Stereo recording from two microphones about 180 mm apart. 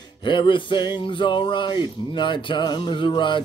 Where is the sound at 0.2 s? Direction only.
25° left (ahead or behind).